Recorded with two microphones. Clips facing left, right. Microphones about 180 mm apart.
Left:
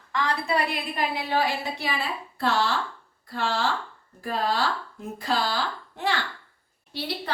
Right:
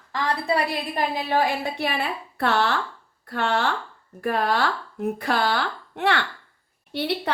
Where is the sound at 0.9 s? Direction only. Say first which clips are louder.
Right 3 dB; 50° right (ahead or behind).